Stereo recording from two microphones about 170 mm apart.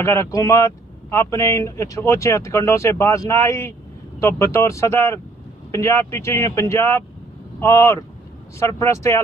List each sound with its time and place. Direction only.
0.0 s speech: 15° left (ahead or behind)